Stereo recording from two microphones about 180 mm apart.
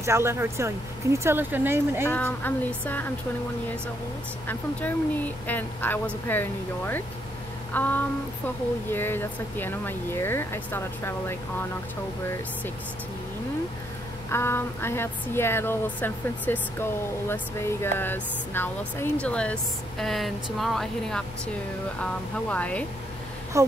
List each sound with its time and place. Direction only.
0.0 s speech: 15° right (ahead or behind)
2.0 s a woman's voice: 10° left (ahead or behind)
4.5 s a woman's voice: 10° left (ahead or behind)
14.3 s a woman's voice: 15° left (ahead or behind)
22.5 s a woman's voice: 5° left (ahead or behind)
23.5 s speech: 15° right (ahead or behind)